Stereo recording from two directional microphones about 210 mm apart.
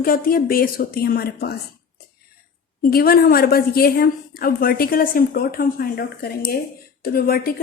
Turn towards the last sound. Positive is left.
turn(degrees=45)  # may be behind; listen again after turning